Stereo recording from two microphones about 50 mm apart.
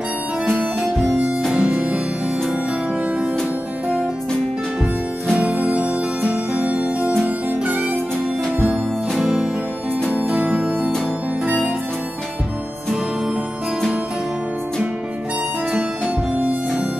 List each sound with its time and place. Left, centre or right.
0.5 s harmonica: right
1.5 s music: right
5.3 s music: right
9.2 s music: centre
10.0 s music: right
16.3 s harmonica: right